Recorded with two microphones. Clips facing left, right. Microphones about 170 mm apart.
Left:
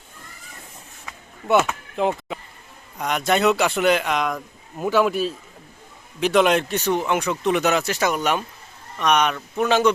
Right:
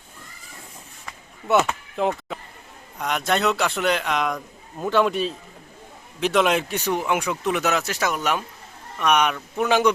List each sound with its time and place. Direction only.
1.5 s a man's voice: centre (ahead or behind)